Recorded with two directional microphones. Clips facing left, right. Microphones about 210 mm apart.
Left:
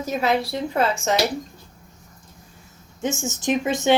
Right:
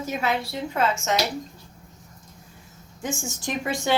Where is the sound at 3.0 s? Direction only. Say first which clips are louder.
Left 5 dB; 20° left (ahead or behind).